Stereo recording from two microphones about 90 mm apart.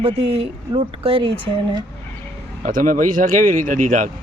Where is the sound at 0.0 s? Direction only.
85° right.